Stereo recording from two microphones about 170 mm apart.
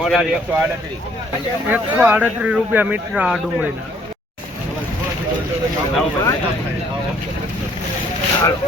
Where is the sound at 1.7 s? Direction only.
10° right (ahead or behind).